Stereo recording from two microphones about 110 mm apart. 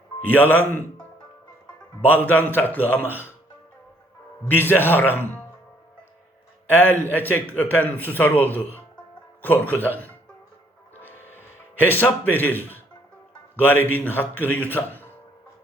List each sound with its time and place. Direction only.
0.3 s speech: 15° left (ahead or behind)
2.0 s speech: 15° left (ahead or behind)
4.5 s speech: 20° left (ahead or behind)
6.7 s speech: 20° left (ahead or behind)
11.8 s speech: 15° left (ahead or behind)